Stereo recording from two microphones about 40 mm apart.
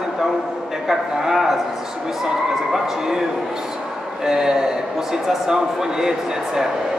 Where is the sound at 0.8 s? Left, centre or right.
Centre.